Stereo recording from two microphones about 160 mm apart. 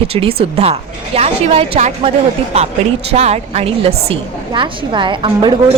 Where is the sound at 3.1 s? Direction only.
40° right (ahead or behind).